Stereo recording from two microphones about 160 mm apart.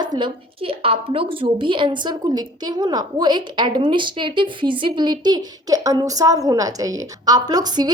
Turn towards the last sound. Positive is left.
turn(degrees=-25)  # may be behind; listen again after turning